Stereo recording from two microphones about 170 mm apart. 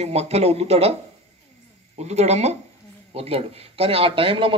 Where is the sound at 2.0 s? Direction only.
40° right (ahead or behind).